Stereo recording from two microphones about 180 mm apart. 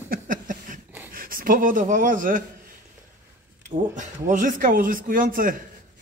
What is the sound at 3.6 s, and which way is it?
A man's voice, 45° right (ahead or behind).